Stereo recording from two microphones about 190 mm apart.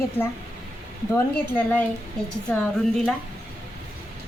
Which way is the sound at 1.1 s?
10° left (ahead or behind).